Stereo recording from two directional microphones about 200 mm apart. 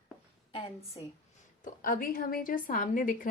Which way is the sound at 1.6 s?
45° left (ahead or behind).